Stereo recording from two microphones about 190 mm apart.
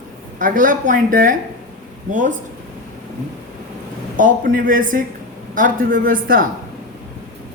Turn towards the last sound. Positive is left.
turn(degrees=-45)  # may be behind; listen again after turning